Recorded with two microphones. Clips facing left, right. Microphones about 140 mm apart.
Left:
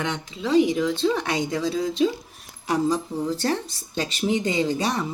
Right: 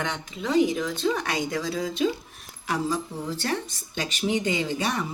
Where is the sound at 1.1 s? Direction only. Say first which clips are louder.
Left 3 dB; 25° left (ahead or behind).